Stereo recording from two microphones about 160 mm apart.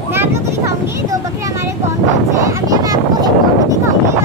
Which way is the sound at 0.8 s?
20° right (ahead or behind).